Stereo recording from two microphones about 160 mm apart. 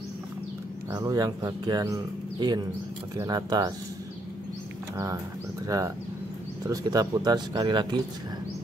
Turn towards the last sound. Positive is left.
turn(degrees=-30)  # may be behind; listen again after turning